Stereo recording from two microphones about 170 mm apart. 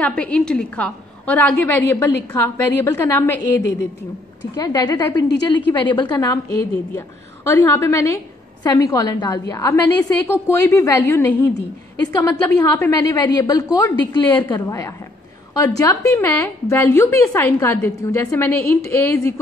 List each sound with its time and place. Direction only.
0.0 s a woman's voice: 5° left (ahead or behind)